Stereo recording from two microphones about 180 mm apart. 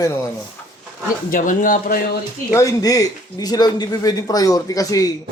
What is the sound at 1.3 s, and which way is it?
Speech, 50° left (ahead or behind).